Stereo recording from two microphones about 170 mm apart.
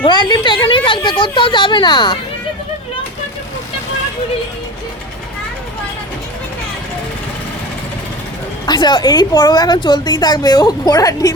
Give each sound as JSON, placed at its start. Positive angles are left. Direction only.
{"t": 0.0, "sound": "a woman's voice", "side_deg": 25}
{"t": 8.6, "sound": "a woman's voice", "side_deg": 25}